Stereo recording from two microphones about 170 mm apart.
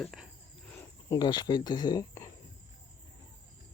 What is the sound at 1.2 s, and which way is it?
Speech, 25° left (ahead or behind).